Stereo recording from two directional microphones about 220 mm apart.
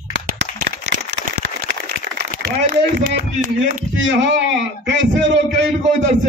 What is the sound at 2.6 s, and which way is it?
Speech, 40° right (ahead or behind).